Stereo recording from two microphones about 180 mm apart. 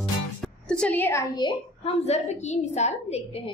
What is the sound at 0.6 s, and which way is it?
A woman's voice, 5° left (ahead or behind).